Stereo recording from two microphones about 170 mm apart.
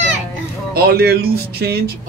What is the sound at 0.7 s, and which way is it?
Speech, 70° right (ahead or behind).